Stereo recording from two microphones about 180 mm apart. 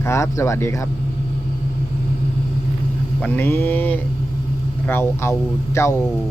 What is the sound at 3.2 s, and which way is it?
Speech, 10° left (ahead or behind).